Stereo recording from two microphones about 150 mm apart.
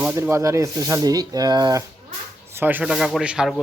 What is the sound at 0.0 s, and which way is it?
Speech, 15° right (ahead or behind).